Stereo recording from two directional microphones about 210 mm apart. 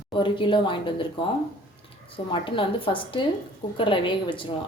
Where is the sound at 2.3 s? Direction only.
25° left (ahead or behind).